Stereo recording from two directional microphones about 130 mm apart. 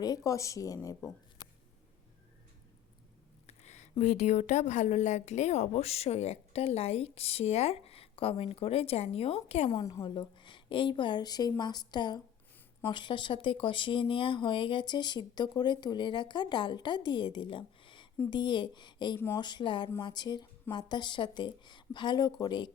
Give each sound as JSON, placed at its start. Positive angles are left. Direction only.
{"t": 0.0, "sound": "speech", "side_deg": 25}
{"t": 3.4, "sound": "a woman's voice", "side_deg": 60}
{"t": 10.0, "sound": "speech", "side_deg": 40}